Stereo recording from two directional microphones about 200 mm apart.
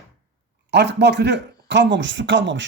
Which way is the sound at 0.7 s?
60° right (ahead or behind).